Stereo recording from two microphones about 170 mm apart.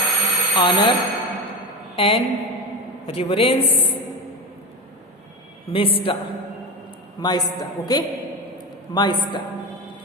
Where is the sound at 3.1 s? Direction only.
35° left (ahead or behind).